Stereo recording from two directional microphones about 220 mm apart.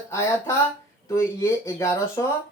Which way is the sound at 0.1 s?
10° left (ahead or behind).